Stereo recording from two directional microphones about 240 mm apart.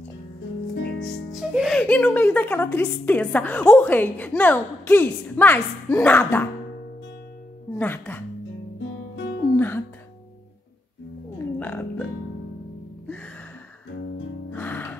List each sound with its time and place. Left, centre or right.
1.3 s a woman's voice: centre
7.7 s speech: centre
8.7 s guitar: left
9.6 s music: centre
11.3 s music: centre
14.5 s music: centre